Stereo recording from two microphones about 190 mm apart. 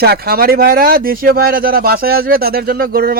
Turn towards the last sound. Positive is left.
turn(degrees=-50)  # may be behind; listen again after turning